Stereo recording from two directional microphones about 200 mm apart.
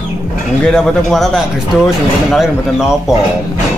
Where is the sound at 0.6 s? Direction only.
Centre (ahead or behind).